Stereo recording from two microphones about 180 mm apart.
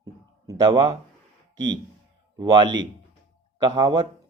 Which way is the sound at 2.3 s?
25° right (ahead or behind).